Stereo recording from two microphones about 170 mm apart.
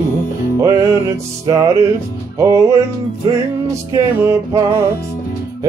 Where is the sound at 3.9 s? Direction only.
15° right (ahead or behind).